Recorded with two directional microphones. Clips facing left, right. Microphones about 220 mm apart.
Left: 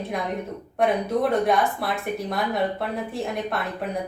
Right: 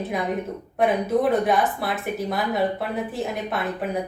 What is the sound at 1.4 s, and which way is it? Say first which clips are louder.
A woman's voice: even; centre (ahead or behind).